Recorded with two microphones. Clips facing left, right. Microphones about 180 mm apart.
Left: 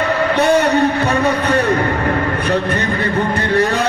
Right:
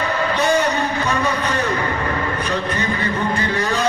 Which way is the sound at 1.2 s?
65° left (ahead or behind).